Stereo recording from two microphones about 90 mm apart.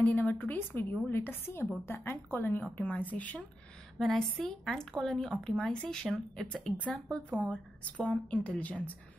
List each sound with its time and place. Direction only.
0.0 s a woman's voice: 20° left (ahead or behind)